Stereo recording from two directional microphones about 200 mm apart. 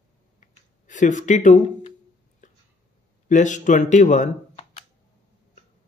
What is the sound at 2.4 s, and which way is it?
Hiccup, 40° left (ahead or behind).